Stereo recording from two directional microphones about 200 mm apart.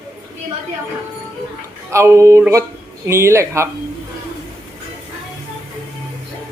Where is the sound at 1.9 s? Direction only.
15° right (ahead or behind).